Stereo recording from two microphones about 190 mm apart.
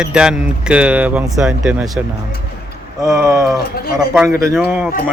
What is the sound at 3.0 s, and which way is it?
Speech, 15° right (ahead or behind).